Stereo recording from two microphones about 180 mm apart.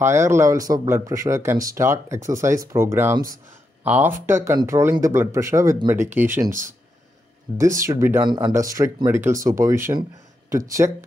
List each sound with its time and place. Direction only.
0.0 s speech: 15° right (ahead or behind)
7.5 s speech: 15° right (ahead or behind)